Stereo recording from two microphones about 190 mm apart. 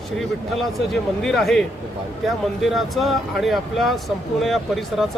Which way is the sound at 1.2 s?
Centre (ahead or behind).